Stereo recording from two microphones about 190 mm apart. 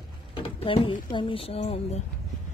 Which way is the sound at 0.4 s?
25° left (ahead or behind).